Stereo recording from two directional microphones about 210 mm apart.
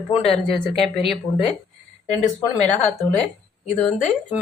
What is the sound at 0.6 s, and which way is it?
Speech, centre (ahead or behind).